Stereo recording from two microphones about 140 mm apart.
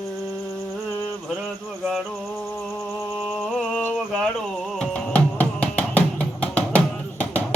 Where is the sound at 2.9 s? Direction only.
Centre (ahead or behind).